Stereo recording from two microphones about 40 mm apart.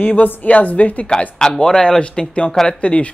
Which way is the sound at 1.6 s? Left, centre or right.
Centre.